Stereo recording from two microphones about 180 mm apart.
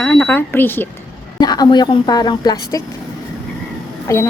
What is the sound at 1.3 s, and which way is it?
A woman's voice, 20° left (ahead or behind).